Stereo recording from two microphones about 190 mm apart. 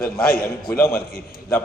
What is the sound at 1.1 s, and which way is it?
Speech, 50° left (ahead or behind).